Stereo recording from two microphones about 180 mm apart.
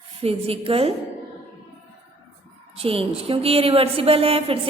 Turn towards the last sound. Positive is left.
turn(degrees=-30)  # may be behind; listen again after turning